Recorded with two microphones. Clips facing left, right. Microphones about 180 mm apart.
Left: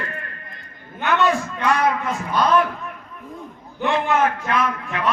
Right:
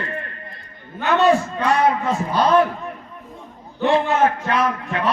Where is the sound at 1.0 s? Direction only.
30° right (ahead or behind).